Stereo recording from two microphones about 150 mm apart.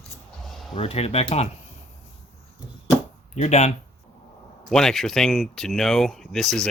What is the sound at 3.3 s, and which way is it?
Speech, 50° left (ahead or behind).